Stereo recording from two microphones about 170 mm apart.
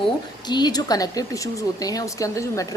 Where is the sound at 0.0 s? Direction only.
25° left (ahead or behind).